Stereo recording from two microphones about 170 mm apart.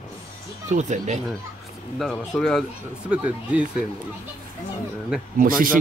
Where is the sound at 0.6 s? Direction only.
45° right (ahead or behind).